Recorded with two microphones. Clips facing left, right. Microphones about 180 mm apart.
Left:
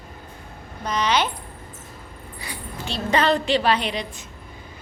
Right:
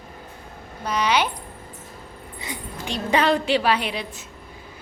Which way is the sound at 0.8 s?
10° right (ahead or behind).